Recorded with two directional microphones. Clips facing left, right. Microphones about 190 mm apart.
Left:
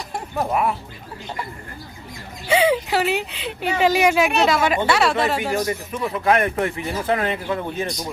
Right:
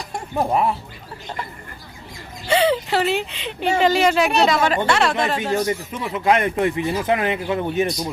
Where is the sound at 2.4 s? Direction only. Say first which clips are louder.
Even; 10° left (ahead or behind).